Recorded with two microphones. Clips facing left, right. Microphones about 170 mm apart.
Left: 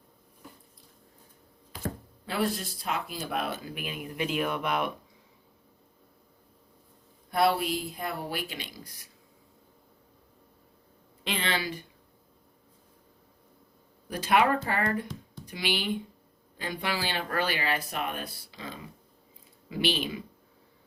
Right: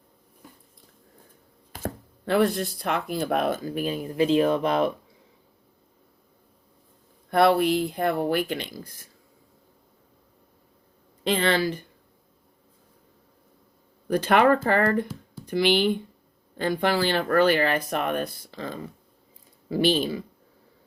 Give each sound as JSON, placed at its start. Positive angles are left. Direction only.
{"t": 1.7, "sound": "chopping", "side_deg": -50}
{"t": 2.7, "sound": "speech", "side_deg": -60}
{"t": 7.3, "sound": "speech", "side_deg": -55}
{"t": 11.2, "sound": "speech", "side_deg": -45}
{"t": 14.3, "sound": "speech", "side_deg": -50}